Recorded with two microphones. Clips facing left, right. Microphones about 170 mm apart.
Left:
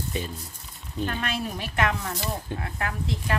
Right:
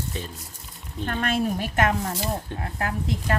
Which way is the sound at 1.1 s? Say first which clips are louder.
Right 10 dB; 50° right (ahead or behind).